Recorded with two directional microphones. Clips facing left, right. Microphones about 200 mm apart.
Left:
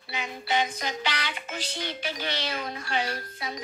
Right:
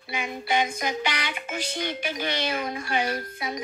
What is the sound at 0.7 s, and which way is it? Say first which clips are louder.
Speech: right 3 dB; 15° right (ahead or behind).